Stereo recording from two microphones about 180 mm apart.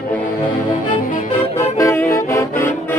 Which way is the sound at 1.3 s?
15° left (ahead or behind).